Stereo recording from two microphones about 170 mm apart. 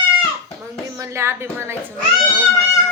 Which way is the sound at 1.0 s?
15° right (ahead or behind).